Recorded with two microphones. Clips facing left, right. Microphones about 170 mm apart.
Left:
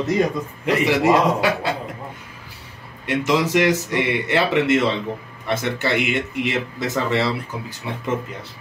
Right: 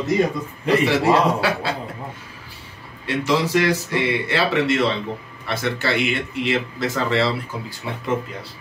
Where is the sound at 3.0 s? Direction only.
20° left (ahead or behind).